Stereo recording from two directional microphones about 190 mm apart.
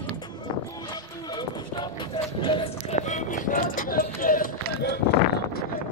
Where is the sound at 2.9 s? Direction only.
40° left (ahead or behind).